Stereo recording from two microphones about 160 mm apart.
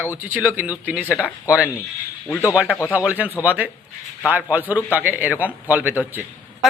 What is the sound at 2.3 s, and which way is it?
Speech, 20° left (ahead or behind).